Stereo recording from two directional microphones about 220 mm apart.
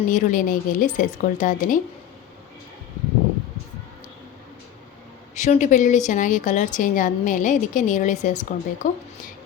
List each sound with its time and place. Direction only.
0.1 s a woman's voice: 35° left (ahead or behind)
5.3 s a woman's voice: 30° left (ahead or behind)